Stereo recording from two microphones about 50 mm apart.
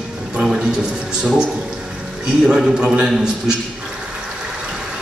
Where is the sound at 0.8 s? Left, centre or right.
Centre.